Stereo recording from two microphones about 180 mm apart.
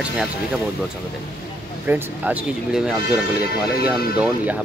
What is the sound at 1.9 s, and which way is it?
Speech, 10° right (ahead or behind).